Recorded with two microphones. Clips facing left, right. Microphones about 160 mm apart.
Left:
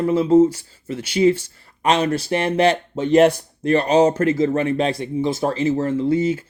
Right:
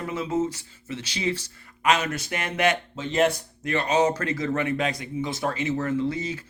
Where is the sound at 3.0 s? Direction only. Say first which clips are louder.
Left 10 dB; 50° left (ahead or behind).